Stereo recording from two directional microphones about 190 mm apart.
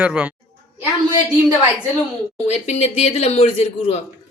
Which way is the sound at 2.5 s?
35° left (ahead or behind).